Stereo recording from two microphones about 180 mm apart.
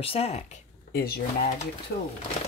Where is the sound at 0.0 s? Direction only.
35° left (ahead or behind).